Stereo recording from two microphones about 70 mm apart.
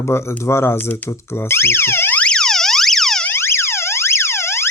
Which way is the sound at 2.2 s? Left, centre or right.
Centre.